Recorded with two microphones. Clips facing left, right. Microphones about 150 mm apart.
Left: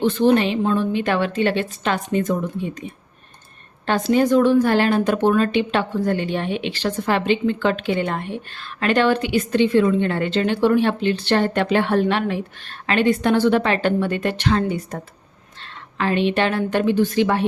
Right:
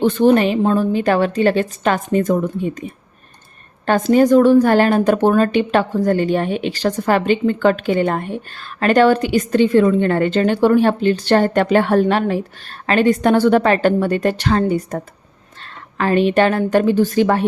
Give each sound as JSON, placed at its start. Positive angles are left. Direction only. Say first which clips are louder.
{"t": 0.0, "sound": "a woman's voice", "louder": "right 3 dB", "side_deg": -50}
{"t": 3.8, "sound": "a woman's voice", "louder": "right 5 dB", "side_deg": -45}